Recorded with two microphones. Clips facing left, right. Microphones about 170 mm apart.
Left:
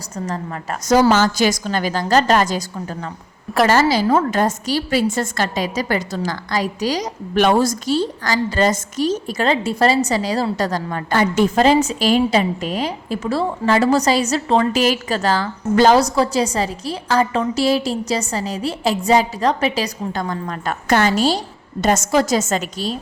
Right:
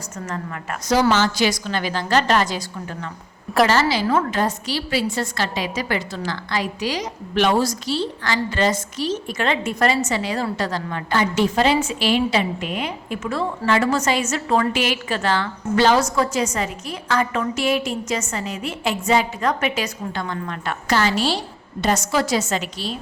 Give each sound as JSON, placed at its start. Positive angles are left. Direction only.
{"t": 0.3, "sound": "a woman's voice", "side_deg": 35}
{"t": 3.7, "sound": "a woman's voice", "side_deg": 45}